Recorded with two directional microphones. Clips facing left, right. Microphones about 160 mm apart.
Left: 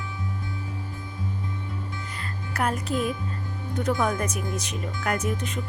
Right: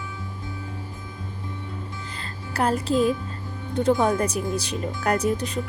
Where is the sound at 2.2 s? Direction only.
30° right (ahead or behind).